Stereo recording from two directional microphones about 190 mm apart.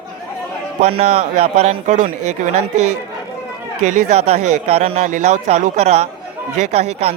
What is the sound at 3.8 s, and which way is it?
A man's voice, 35° right (ahead or behind).